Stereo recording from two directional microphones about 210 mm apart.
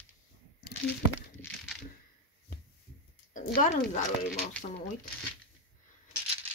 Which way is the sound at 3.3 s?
35° left (ahead or behind).